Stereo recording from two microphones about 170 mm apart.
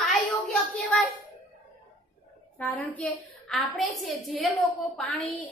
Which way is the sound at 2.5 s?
10° left (ahead or behind).